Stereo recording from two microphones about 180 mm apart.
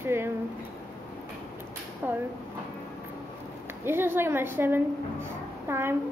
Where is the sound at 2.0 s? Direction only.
10° right (ahead or behind).